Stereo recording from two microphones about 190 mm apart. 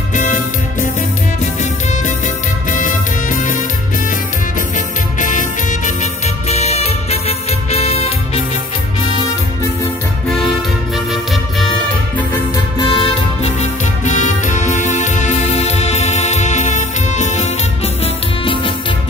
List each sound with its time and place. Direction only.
0.1 s music: 45° left (ahead or behind)
2.7 s music: 40° left (ahead or behind)
4.7 s music: 45° left (ahead or behind)
12.7 s music: 25° left (ahead or behind)
18.0 s music: 25° left (ahead or behind)